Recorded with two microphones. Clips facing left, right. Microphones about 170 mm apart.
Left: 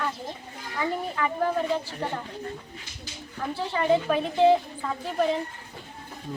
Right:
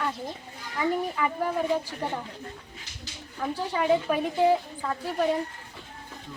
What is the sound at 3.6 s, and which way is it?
Speech, 10° right (ahead or behind).